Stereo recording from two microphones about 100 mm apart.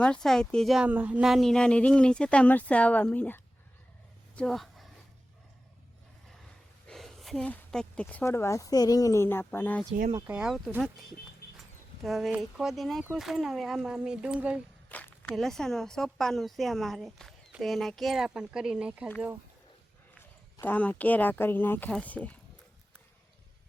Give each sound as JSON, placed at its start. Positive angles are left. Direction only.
{"t": 0.0, "sound": "speech", "side_deg": 5}
{"t": 0.8, "sound": "speech", "side_deg": -15}
{"t": 1.2, "sound": "speech", "side_deg": 0}
{"t": 4.4, "sound": "a sound", "side_deg": 5}
{"t": 6.8, "sound": "a sound", "side_deg": 0}
{"t": 7.3, "sound": "speech", "side_deg": 10}
{"t": 8.2, "sound": "speech", "side_deg": 25}
{"t": 10.2, "sound": "speech", "side_deg": -10}
{"t": 12.0, "sound": "speech", "side_deg": 0}
{"t": 14.8, "sound": "a sound", "side_deg": 20}
{"t": 15.4, "sound": "speech", "side_deg": 5}
{"t": 20.6, "sound": "speech", "side_deg": 15}